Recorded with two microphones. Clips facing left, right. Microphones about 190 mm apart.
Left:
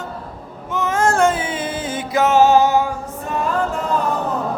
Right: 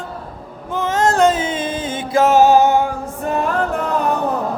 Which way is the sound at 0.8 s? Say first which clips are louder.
Right 1 dB; 25° right (ahead or behind).